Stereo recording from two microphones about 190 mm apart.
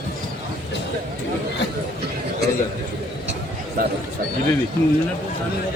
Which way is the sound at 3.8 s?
50° right (ahead or behind).